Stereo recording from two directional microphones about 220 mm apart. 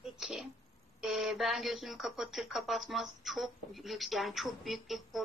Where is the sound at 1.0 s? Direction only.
Centre (ahead or behind).